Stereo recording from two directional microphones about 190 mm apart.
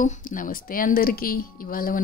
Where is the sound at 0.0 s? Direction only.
45° left (ahead or behind).